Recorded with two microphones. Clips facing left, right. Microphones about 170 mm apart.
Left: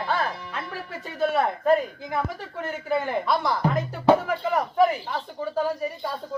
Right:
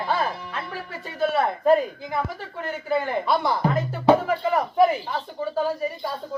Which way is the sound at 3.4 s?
5° right (ahead or behind).